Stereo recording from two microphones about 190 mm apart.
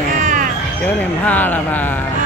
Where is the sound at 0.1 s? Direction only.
45° right (ahead or behind).